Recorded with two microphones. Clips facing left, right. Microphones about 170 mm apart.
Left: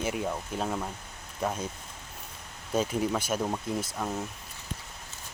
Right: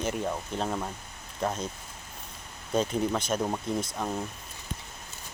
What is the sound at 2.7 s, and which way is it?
Speech, 5° left (ahead or behind).